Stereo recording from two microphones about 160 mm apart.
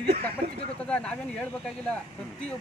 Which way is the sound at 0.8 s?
10° left (ahead or behind).